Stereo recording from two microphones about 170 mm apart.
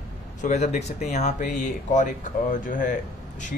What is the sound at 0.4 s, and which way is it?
Speech, 45° left (ahead or behind).